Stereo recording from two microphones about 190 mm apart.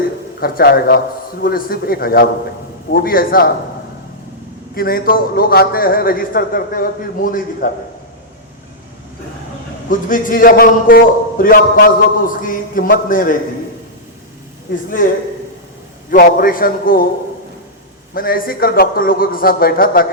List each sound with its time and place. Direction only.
0.3 s a man's voice: 55° left (ahead or behind)
4.7 s a man's voice: 50° left (ahead or behind)
9.9 s a man's voice: 45° left (ahead or behind)
16.0 s a man's voice: 50° left (ahead or behind)
18.1 s a man's voice: 50° left (ahead or behind)